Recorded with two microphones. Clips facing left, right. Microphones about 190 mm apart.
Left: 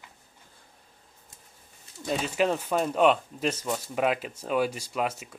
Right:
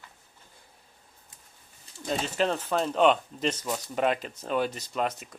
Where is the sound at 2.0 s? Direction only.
10° left (ahead or behind).